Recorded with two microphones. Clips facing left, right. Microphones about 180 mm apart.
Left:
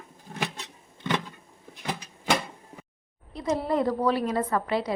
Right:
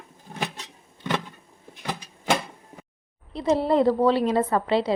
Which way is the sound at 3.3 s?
30° right (ahead or behind).